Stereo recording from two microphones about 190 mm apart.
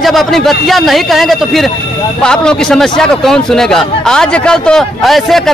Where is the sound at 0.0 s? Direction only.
Centre (ahead or behind).